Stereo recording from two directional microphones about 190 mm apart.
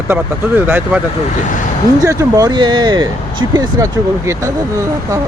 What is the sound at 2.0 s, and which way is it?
Speech, 15° right (ahead or behind).